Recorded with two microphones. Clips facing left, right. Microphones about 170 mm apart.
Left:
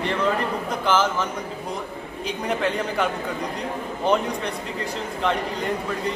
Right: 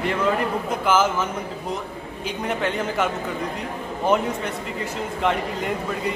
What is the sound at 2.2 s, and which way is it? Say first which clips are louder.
Speech: left 1 dB; centre (ahead or behind).